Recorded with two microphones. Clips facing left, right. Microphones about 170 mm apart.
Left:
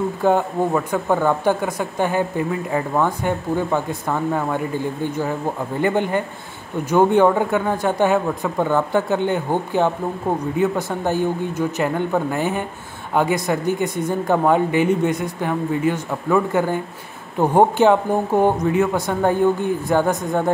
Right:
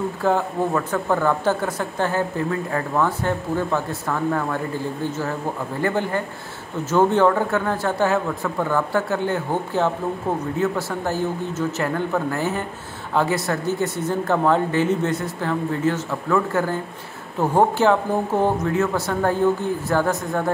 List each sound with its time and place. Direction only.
0.2 s a woman's voice: 15° left (ahead or behind)
5.8 s a woman's voice: 20° left (ahead or behind)